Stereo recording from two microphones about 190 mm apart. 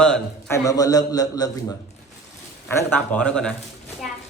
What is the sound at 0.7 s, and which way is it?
Speech, 20° left (ahead or behind).